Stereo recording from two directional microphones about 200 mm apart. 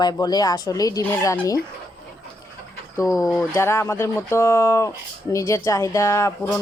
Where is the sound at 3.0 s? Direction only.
15° left (ahead or behind).